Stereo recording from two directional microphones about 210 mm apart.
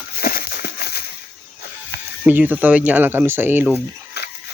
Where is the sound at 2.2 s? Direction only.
10° right (ahead or behind).